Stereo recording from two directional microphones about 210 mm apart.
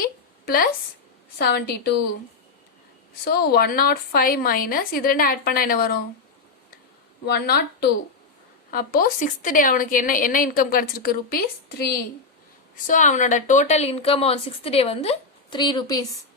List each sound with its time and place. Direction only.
0.0 s a sound: 45° left (ahead or behind)
1.4 s a woman's voice: 50° left (ahead or behind)
3.2 s a woman's voice: 50° left (ahead or behind)
7.3 s a woman's voice: 50° left (ahead or behind)
12.7 s a woman's voice: 40° left (ahead or behind); by 16.0 s 20° left (ahead or behind)